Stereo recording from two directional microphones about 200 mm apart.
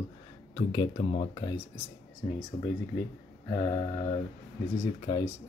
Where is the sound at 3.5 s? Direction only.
25° left (ahead or behind).